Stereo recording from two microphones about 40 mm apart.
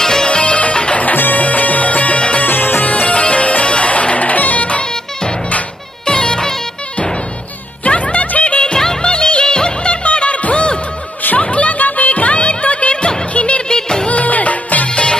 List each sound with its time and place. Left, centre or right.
0.0 s music: centre
1.0 s music: left
2.4 s music: left
2.8 s music: left
6.0 s music: centre
7.8 s music: left
8.8 s music of bollywood: left
11.3 s music: left
13.7 s music: centre
14.0 s music: left
14.9 s music: left